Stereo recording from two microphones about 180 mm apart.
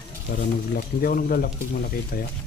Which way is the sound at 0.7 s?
55° left (ahead or behind).